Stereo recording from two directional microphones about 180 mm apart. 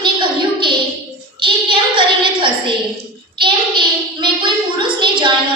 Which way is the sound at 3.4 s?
25° right (ahead or behind).